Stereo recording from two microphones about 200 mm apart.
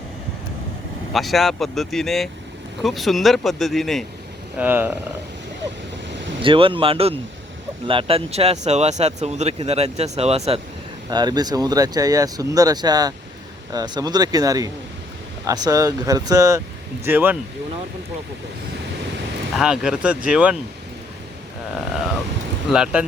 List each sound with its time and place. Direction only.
1.1 s speech: centre (ahead or behind)
4.5 s speech: 10° right (ahead or behind)
6.4 s speech: 25° right (ahead or behind)
11.1 s speech: 20° right (ahead or behind)
19.5 s speech: 5° right (ahead or behind)
22.7 s speech: 5° right (ahead or behind)